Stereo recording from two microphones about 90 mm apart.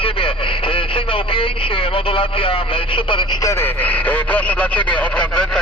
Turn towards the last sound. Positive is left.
turn(degrees=10)  # may be behind; listen again after turning